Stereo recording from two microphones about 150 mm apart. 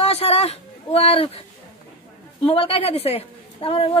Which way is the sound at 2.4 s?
40° left (ahead or behind).